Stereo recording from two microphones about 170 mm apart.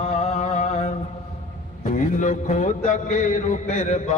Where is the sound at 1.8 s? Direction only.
45° left (ahead or behind).